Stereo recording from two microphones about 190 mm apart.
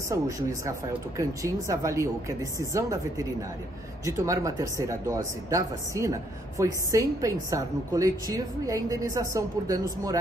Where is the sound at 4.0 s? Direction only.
15° right (ahead or behind).